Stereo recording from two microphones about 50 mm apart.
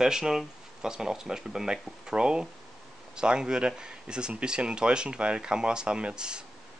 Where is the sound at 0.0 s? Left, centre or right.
Centre.